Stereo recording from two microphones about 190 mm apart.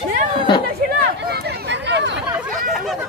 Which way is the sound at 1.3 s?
60° right (ahead or behind).